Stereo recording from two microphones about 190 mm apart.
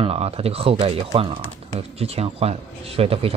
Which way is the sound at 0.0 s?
30° right (ahead or behind).